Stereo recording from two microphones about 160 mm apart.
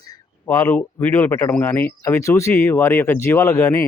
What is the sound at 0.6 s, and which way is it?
Speech, 10° left (ahead or behind).